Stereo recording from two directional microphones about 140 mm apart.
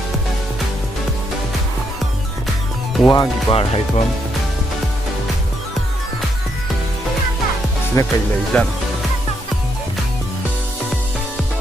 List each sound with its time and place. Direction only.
3.1 s speech: 30° left (ahead or behind)
3.5 s speech: 45° left (ahead or behind)
8.0 s speech: 25° left (ahead or behind)
8.5 s speech: 10° left (ahead or behind)